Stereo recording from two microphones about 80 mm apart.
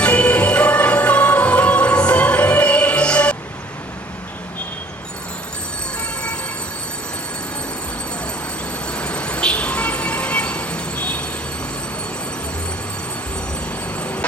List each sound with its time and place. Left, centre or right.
0.0 s music: centre
8.9 s vehicle: centre
14.0 s a sound: centre